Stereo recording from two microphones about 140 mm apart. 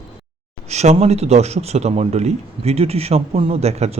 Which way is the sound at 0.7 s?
50° right (ahead or behind).